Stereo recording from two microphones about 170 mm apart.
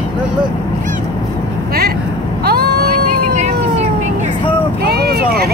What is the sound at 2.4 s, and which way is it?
Vehicle, 65° right (ahead or behind).